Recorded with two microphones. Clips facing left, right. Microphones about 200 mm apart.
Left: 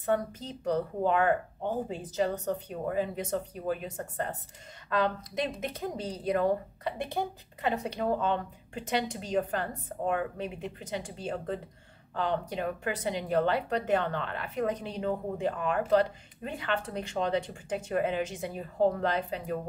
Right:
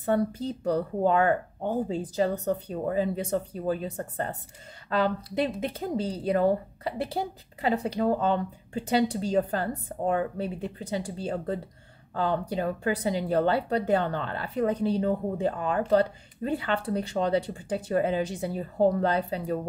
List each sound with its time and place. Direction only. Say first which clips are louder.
0.0 s a woman's voice: right 4 dB; 35° right (ahead or behind)